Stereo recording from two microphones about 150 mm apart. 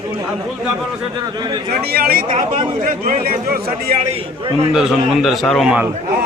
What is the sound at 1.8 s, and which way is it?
Speech, 85° right.